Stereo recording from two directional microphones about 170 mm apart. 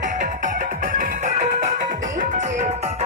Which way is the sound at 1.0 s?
50° right (ahead or behind).